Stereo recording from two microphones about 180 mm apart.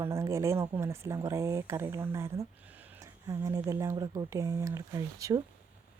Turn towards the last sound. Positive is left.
turn(degrees=-20)  # may be behind; listen again after turning